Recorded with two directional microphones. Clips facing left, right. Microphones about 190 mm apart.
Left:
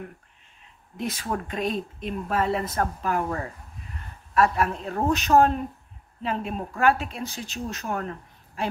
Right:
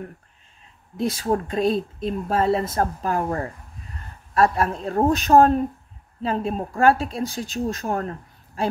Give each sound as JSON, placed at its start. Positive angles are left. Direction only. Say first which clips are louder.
{"t": 0.9, "sound": "speech", "louder": "right 7 dB", "side_deg": -30}